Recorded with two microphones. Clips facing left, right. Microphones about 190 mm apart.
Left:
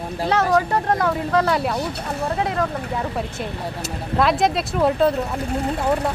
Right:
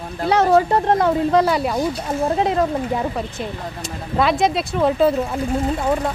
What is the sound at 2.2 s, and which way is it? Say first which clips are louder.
Speech: right 4 dB; 20° right (ahead or behind).